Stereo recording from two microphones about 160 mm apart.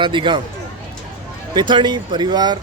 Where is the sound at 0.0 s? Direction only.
30° right (ahead or behind).